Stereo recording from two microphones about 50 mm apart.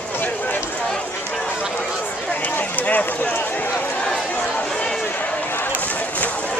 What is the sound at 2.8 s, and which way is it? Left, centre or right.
Speech, left.